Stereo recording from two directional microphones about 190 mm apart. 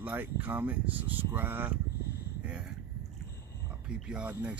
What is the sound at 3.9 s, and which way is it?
Speech, 5° right (ahead or behind).